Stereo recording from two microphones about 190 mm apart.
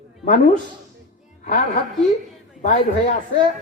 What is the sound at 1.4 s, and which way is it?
Speech, 40° left (ahead or behind).